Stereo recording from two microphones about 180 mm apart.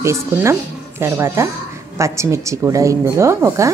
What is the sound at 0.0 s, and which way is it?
A woman's voice, 15° right (ahead or behind).